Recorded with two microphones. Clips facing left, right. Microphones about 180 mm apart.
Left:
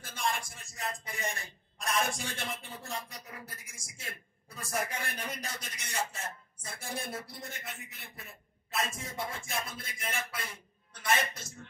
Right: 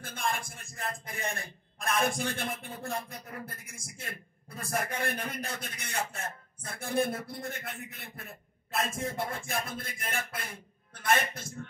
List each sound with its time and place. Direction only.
0.0 s a man's voice: 55° right (ahead or behind)